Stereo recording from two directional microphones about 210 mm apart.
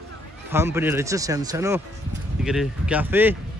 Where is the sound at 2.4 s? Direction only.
Centre (ahead or behind).